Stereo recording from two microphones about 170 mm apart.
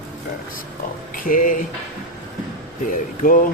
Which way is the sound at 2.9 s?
55° left (ahead or behind).